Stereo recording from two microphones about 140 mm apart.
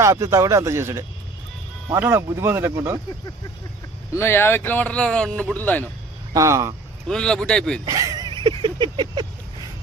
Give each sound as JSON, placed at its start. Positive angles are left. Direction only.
{"t": 0.0, "sound": "speech", "side_deg": -20}
{"t": 4.1, "sound": "speech", "side_deg": 20}
{"t": 6.3, "sound": "speech", "side_deg": -25}
{"t": 7.1, "sound": "speech", "side_deg": 5}
{"t": 7.9, "sound": "a sound", "side_deg": -25}